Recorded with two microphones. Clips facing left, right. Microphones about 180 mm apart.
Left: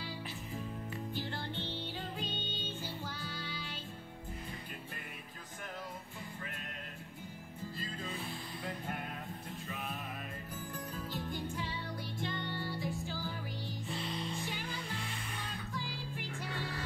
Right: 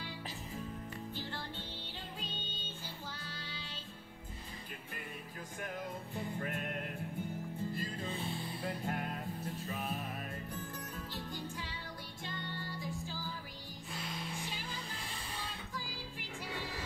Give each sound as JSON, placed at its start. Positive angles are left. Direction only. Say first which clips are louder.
{"t": 6.4, "sound": "music", "louder": "right 7 dB", "side_deg": -55}
{"t": 8.1, "sound": "music", "louder": "right 2 dB", "side_deg": -25}
{"t": 8.6, "sound": "music", "louder": "right 3 dB", "side_deg": 0}
{"t": 13.9, "sound": "music", "louder": "left 2 dB", "side_deg": 0}
{"t": 16.4, "sound": "music", "louder": "even", "side_deg": -10}